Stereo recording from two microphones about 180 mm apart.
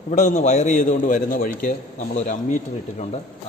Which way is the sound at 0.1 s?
40° left (ahead or behind).